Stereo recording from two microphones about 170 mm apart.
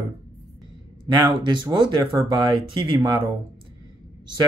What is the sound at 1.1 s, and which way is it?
Speech, 20° right (ahead or behind).